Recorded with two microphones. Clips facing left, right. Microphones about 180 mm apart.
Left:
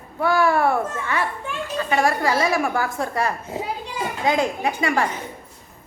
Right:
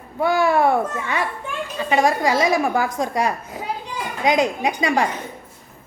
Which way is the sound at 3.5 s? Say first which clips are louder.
Left 1 dB; 25° left (ahead or behind).